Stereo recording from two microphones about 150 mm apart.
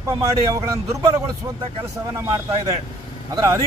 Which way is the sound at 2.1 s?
25° right (ahead or behind).